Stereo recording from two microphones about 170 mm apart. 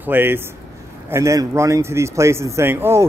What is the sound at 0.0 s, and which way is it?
Speech, 10° right (ahead or behind).